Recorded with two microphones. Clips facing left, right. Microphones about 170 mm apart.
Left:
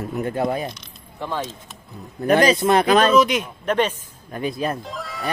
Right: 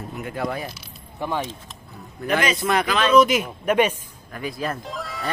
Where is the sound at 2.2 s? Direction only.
35° left (ahead or behind).